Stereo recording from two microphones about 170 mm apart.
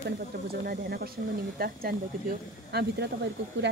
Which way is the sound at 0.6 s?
65° right (ahead or behind).